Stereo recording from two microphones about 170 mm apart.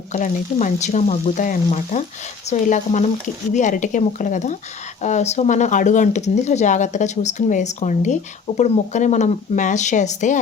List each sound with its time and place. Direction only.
0.1 s speech: 45° left (ahead or behind)